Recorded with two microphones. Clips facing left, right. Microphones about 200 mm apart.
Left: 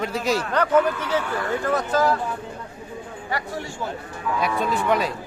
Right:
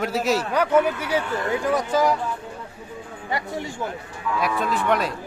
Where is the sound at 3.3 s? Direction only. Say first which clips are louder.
Right 1 dB; 20° right (ahead or behind).